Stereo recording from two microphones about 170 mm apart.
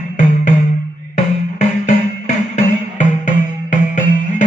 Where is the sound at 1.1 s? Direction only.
45° left (ahead or behind).